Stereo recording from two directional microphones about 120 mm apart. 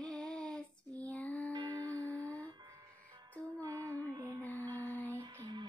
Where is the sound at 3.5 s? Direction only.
15° left (ahead or behind).